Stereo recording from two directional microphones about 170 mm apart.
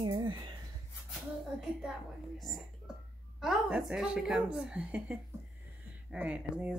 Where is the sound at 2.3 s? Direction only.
Centre (ahead or behind).